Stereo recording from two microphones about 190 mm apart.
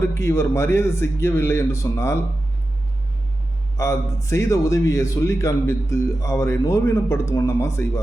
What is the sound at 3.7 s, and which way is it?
A man's voice, 15° left (ahead or behind).